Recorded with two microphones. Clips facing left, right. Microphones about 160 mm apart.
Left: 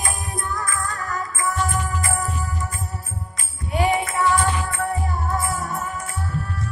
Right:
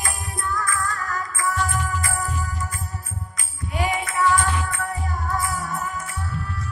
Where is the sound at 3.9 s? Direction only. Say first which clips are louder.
Right 2 dB; 25° left (ahead or behind).